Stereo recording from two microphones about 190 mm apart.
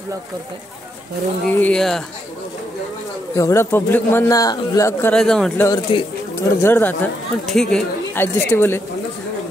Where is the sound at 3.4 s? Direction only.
15° left (ahead or behind).